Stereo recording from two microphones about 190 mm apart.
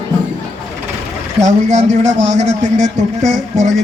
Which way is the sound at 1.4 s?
40° right (ahead or behind).